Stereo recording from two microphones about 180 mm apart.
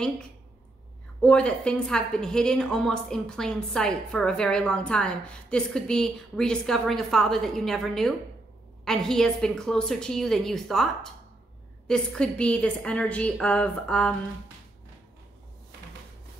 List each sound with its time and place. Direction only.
1.2 s a woman's voice: 5° left (ahead or behind)